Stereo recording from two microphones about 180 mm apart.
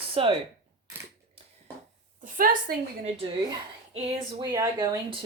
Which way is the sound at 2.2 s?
50° right (ahead or behind).